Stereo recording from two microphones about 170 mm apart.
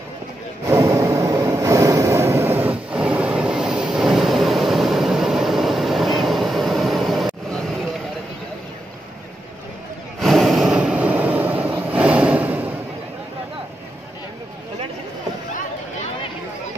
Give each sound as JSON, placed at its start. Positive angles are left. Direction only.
{"t": 0.7, "sound": "vehicle", "side_deg": -15}
{"t": 10.2, "sound": "vehicle", "side_deg": 0}